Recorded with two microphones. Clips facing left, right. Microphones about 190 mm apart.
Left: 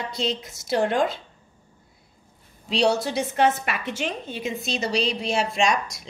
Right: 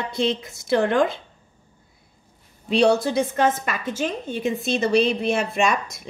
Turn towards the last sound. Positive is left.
turn(degrees=-55)  # may be behind; listen again after turning